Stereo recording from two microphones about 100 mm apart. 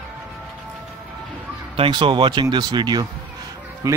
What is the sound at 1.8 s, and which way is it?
Speech, 55° right (ahead or behind).